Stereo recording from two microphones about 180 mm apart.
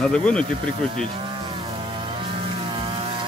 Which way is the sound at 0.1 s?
5° left (ahead or behind).